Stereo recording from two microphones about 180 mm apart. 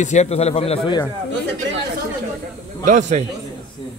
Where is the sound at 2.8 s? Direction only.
45° right (ahead or behind).